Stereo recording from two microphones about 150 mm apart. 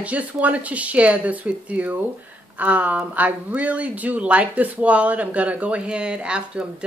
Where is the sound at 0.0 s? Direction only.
10° right (ahead or behind).